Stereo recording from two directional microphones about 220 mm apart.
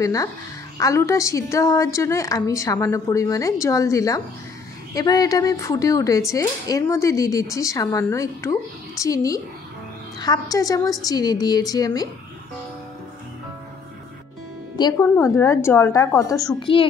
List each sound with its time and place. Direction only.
0.0 s speech: 15° left (ahead or behind)
14.8 s speech: 15° left (ahead or behind)